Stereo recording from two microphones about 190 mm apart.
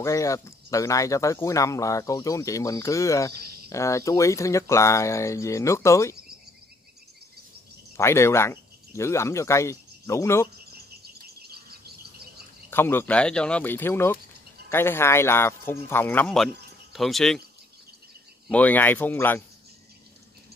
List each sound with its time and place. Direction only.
0.0 s speech: 15° left (ahead or behind)
8.0 s speech: 15° left (ahead or behind)
11.4 s bird: 55° right (ahead or behind)
12.6 s speech: 10° left (ahead or behind)
18.5 s speech: 10° left (ahead or behind)